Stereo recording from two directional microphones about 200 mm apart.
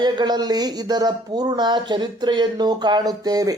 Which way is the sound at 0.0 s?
20° right (ahead or behind).